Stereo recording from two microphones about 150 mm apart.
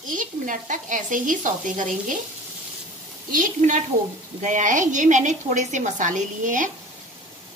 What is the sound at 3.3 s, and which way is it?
A woman's voice, 60° right (ahead or behind).